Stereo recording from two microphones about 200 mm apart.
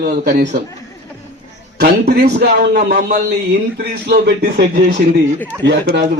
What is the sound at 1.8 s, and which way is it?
Speech, 55° right (ahead or behind).